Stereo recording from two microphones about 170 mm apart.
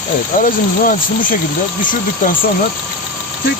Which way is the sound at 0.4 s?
55° left (ahead or behind).